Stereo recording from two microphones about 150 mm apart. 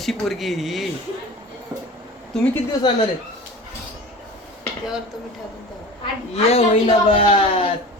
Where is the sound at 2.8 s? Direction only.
30° left (ahead or behind).